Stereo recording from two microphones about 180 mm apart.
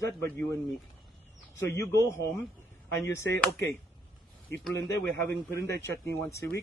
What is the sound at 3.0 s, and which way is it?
Speech, 15° left (ahead or behind).